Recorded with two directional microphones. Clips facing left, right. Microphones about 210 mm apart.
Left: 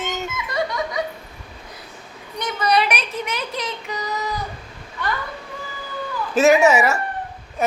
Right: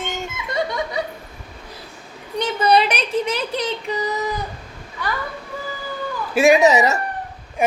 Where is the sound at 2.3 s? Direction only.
30° right (ahead or behind).